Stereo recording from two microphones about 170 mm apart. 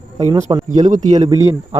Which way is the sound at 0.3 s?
20° right (ahead or behind).